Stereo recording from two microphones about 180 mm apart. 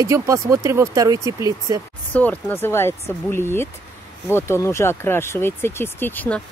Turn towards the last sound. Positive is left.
turn(degrees=10)  # may be behind; listen again after turning